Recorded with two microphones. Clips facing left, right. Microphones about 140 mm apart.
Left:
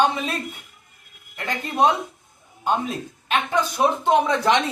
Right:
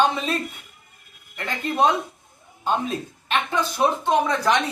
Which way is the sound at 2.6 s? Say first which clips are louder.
Left 1 dB; 10° left (ahead or behind).